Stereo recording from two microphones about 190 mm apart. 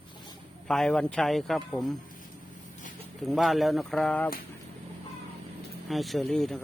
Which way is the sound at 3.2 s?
Centre (ahead or behind).